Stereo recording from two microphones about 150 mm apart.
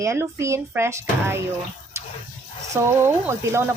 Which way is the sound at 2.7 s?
15° right (ahead or behind).